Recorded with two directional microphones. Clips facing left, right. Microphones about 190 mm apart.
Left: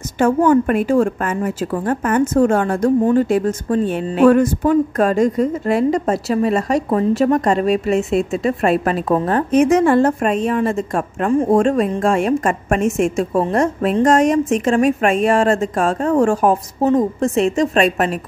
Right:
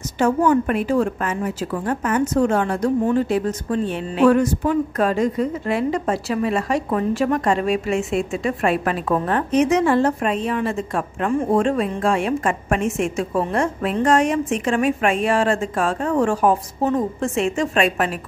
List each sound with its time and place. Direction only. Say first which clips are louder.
0.2 s a woman's voice: left 4 dB; 50° left (ahead or behind)